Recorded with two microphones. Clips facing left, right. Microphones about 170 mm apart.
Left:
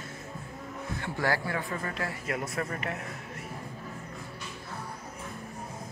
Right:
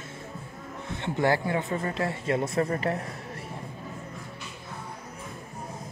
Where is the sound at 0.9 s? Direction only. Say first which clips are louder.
Right 5 dB; 25° right (ahead or behind).